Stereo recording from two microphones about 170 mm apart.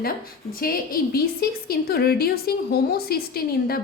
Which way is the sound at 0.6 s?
60° left (ahead or behind).